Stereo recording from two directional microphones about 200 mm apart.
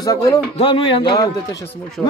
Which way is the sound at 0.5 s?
25° left (ahead or behind).